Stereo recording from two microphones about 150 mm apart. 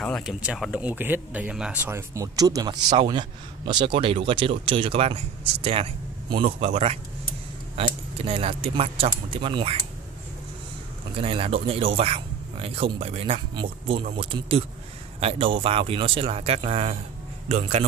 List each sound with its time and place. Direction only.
0.0 s a sound: 5° left (ahead or behind)
0.3 s speech: 5° right (ahead or behind); by 7.0 s 40° right (ahead or behind)
8.2 s speech: 40° right (ahead or behind)
11.1 s speech: 40° right (ahead or behind)